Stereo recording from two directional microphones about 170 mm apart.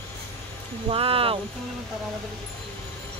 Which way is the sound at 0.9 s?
35° right (ahead or behind).